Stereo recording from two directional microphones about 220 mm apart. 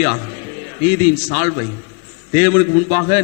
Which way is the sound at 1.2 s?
15° left (ahead or behind).